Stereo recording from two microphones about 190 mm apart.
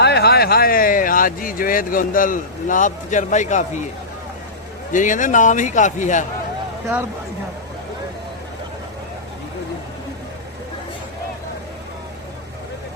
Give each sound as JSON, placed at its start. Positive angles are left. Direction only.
{"t": 0.0, "sound": "speech", "side_deg": 60}
{"t": 4.9, "sound": "a man's voice", "side_deg": 40}